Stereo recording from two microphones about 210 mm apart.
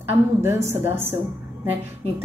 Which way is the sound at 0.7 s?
10° right (ahead or behind).